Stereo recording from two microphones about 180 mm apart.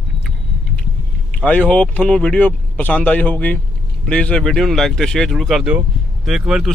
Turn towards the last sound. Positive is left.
turn(degrees=-5)  # may be behind; listen again after turning